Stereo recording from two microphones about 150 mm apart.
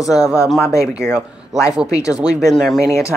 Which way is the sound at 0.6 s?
20° left (ahead or behind).